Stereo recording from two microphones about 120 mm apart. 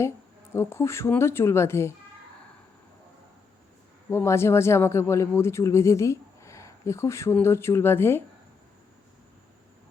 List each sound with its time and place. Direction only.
0.5 s speech: 20° left (ahead or behind)
4.1 s speech: 20° left (ahead or behind)